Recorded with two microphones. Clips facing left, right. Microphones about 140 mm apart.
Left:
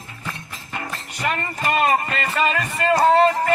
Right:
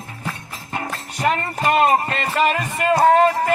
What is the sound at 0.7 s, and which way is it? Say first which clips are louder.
Speech: right 4 dB; 35° right (ahead or behind).